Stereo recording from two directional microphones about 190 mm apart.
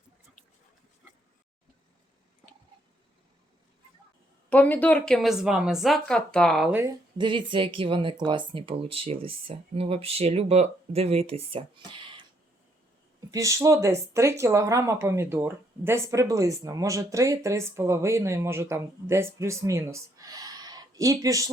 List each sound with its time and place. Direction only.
4.4 s a woman's voice: 10° left (ahead or behind)
7.2 s speech: 25° right (ahead or behind)
13.3 s speech: 15° right (ahead or behind)